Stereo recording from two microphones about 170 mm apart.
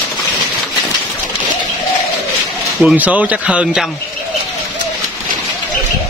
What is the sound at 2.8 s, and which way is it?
Speech, 10° right (ahead or behind).